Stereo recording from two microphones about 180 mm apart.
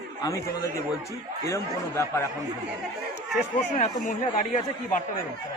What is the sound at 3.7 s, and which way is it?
Speech, 40° left (ahead or behind).